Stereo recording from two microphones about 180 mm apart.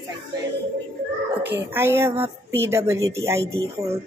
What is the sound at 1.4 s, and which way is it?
A woman's voice, 10° right (ahead or behind).